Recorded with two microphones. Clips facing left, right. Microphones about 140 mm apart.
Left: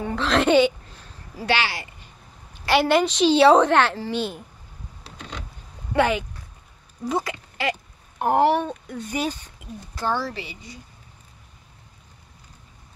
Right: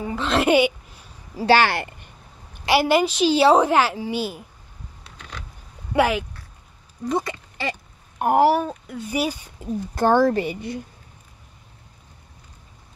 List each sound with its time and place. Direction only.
0.0 s a woman's voice: 5° right (ahead or behind)
1.5 s speech: 55° right (ahead or behind)
2.7 s a woman's voice: 5° right (ahead or behind)
5.0 s a sound: 25° left (ahead or behind)
5.9 s a woman's voice: 5° right (ahead or behind)
9.9 s speech: 50° right (ahead or behind)